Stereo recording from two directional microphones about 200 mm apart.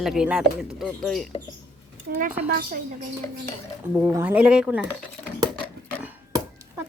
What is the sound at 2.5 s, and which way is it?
Speech, 50° right (ahead or behind).